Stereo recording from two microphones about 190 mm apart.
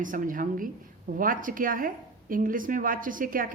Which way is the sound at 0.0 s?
45° right (ahead or behind).